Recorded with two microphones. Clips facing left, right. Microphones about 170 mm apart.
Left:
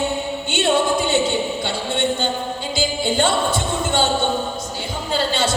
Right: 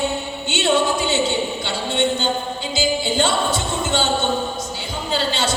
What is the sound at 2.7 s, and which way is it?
Music, 55° left (ahead or behind).